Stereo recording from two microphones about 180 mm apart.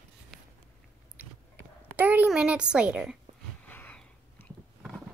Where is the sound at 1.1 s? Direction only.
10° right (ahead or behind).